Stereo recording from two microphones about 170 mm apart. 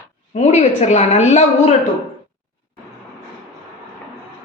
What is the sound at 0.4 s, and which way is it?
A woman's voice, 45° left (ahead or behind).